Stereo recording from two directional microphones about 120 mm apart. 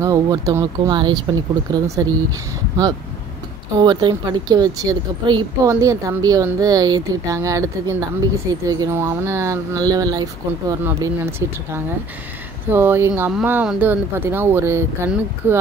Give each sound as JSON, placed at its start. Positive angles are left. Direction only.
{"t": 0.0, "sound": "speech", "side_deg": -30}
{"t": 3.7, "sound": "speech", "side_deg": -35}
{"t": 11.1, "sound": "speech", "side_deg": -20}